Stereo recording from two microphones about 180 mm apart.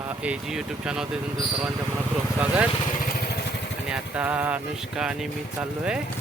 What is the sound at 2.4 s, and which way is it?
Speech, 5° right (ahead or behind).